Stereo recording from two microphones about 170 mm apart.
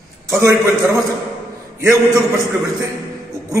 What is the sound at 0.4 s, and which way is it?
A man's voice, 15° right (ahead or behind).